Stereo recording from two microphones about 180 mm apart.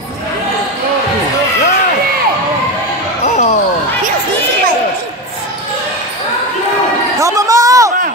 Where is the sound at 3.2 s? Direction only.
40° left (ahead or behind).